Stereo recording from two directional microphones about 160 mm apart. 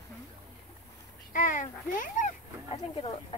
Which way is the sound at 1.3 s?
55° left (ahead or behind).